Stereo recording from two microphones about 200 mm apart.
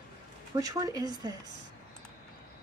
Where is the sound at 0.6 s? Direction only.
15° right (ahead or behind).